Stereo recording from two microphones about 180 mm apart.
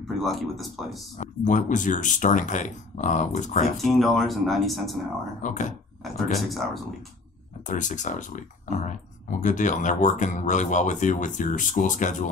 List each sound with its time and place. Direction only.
0.2 s speech: centre (ahead or behind)
1.1 s speech: 40° left (ahead or behind)
3.7 s speech: centre (ahead or behind)
5.4 s speech: 45° left (ahead or behind)
6.0 s speech: centre (ahead or behind)
7.6 s speech: 45° left (ahead or behind)